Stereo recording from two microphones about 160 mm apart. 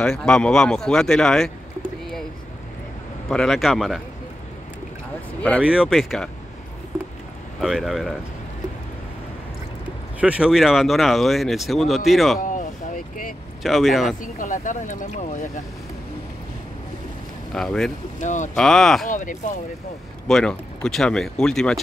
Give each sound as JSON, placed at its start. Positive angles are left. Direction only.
{"t": 0.0, "sound": "speech", "side_deg": 5}
{"t": 3.3, "sound": "speech", "side_deg": 0}
{"t": 5.6, "sound": "speech", "side_deg": -5}
{"t": 7.6, "sound": "speech", "side_deg": 0}
{"t": 10.2, "sound": "speech", "side_deg": -5}
{"t": 12.4, "sound": "a sound", "side_deg": 55}
{"t": 13.6, "sound": "speech", "side_deg": 0}
{"t": 14.2, "sound": "speech", "side_deg": 55}
{"t": 17.5, "sound": "speech", "side_deg": 5}
{"t": 18.2, "sound": "speech", "side_deg": 50}
{"t": 18.6, "sound": "speech", "side_deg": 0}
{"t": 19.0, "sound": "speech", "side_deg": 55}
{"t": 20.2, "sound": "speech", "side_deg": 5}